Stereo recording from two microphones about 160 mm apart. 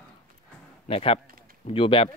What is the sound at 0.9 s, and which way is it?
Speech, 35° left (ahead or behind).